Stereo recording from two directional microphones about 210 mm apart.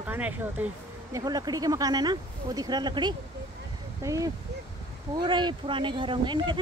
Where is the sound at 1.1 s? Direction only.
20° right (ahead or behind).